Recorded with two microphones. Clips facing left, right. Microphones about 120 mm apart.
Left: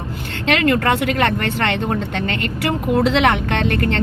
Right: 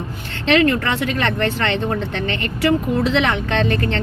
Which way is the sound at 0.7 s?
60° left (ahead or behind).